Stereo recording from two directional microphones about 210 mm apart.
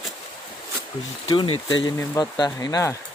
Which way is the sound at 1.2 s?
25° left (ahead or behind).